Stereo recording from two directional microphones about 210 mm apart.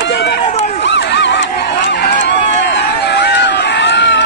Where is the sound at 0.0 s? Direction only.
55° left (ahead or behind).